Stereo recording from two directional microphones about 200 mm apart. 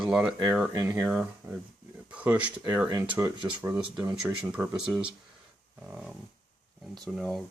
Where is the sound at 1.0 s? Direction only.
5° right (ahead or behind).